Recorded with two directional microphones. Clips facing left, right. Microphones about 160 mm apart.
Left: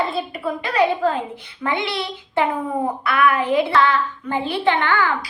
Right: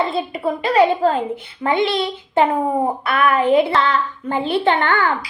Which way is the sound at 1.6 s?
30° right (ahead or behind).